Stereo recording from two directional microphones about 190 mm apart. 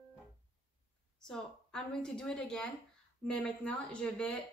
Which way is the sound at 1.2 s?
5° left (ahead or behind).